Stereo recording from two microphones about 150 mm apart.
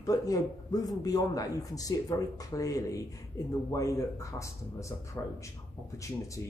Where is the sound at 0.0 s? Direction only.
25° left (ahead or behind).